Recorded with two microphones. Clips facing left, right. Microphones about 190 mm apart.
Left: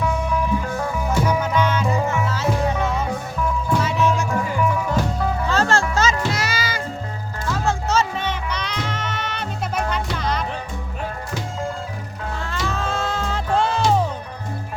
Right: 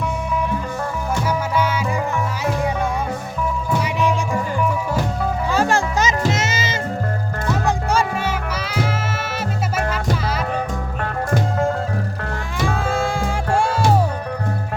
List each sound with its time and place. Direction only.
1.3 s music: 10° right (ahead or behind)
3.8 s music: 15° right (ahead or behind)
5.5 s music: 15° right (ahead or behind)
7.9 s music: 10° right (ahead or behind)
12.5 s music: 10° right (ahead or behind)